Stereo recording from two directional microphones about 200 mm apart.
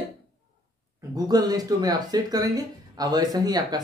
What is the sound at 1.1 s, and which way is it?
Speech, 20° right (ahead or behind).